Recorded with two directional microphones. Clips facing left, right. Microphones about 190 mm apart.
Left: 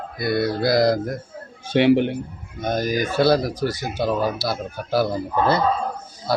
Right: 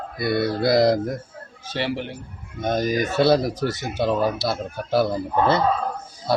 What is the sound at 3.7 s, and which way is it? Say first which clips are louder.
Speech: even; 25° right (ahead or behind).